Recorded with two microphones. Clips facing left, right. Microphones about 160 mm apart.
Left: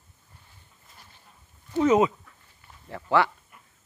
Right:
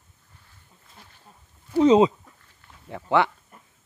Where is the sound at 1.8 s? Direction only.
30° right (ahead or behind).